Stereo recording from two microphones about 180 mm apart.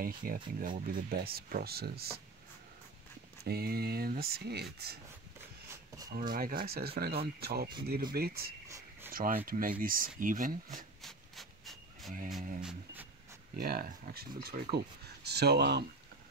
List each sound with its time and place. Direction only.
0.0 s speech: 50° right (ahead or behind)
3.4 s speech: 60° right (ahead or behind)
6.1 s speech: 50° right (ahead or behind)
8.6 s a sound: 15° right (ahead or behind)
9.1 s speech: 55° right (ahead or behind)
11.0 s rub: centre (ahead or behind)
13.6 s speech: 55° right (ahead or behind)